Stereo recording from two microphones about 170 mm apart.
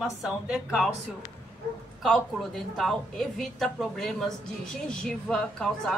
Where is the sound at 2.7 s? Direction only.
Centre (ahead or behind).